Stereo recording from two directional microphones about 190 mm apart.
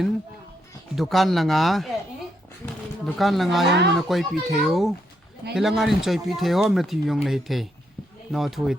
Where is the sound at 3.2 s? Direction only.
Centre (ahead or behind).